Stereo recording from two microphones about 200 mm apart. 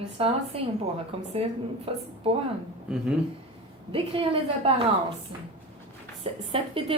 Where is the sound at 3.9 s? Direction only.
25° right (ahead or behind).